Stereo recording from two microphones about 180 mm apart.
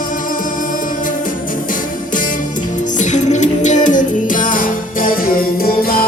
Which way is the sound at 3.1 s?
40° left (ahead or behind).